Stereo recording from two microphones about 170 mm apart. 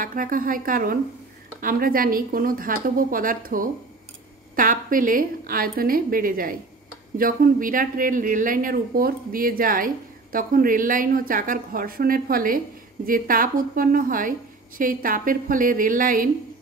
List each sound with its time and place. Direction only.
0.0 s a woman's voice: 55° right (ahead or behind)